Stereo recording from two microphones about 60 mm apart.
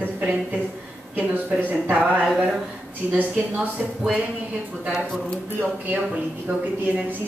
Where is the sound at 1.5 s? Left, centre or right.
Right.